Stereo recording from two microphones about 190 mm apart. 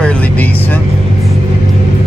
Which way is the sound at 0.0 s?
5° left (ahead or behind).